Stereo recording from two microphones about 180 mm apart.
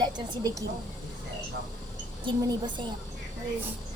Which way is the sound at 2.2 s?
25° right (ahead or behind).